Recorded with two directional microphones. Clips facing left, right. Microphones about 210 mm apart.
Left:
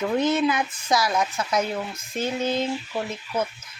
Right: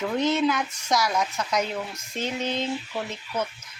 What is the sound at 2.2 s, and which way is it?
Speech, 10° left (ahead or behind).